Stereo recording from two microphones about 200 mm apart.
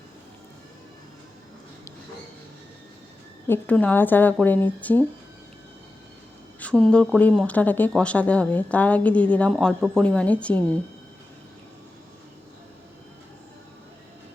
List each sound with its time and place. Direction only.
3.4 s speech: 10° left (ahead or behind)
6.6 s speech: 5° left (ahead or behind)